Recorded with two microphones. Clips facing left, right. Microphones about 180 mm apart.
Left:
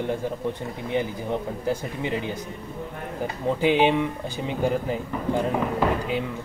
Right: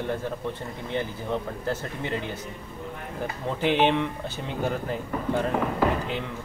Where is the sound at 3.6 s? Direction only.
10° left (ahead or behind).